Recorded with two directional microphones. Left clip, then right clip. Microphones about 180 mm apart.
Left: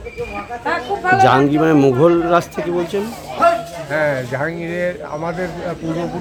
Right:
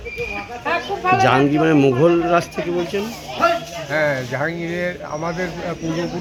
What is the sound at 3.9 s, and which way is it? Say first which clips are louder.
Speech: left 1 dB; 15° left (ahead or behind).